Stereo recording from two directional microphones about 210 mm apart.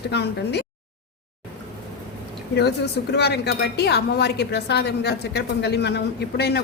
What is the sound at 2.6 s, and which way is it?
A woman's voice, 55° left (ahead or behind).